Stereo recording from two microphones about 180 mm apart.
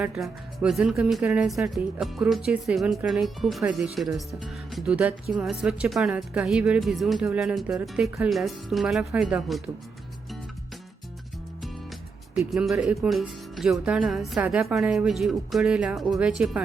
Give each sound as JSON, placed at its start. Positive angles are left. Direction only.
{"t": 0.0, "sound": "speech", "side_deg": -5}
{"t": 4.7, "sound": "music", "side_deg": -5}
{"t": 5.4, "sound": "speech", "side_deg": -5}
{"t": 12.4, "sound": "a woman's voice", "side_deg": 0}